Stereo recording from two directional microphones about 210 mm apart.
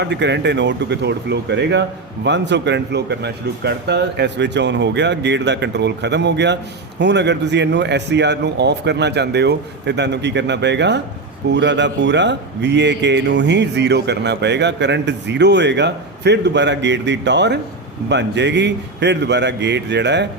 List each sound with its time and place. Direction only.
0.0 s speech: 55° right (ahead or behind)